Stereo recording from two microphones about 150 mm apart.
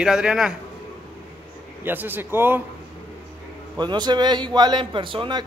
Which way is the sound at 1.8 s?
15° right (ahead or behind).